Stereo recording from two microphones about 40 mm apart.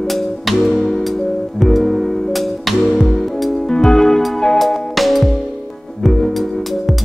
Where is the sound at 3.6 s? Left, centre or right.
Centre.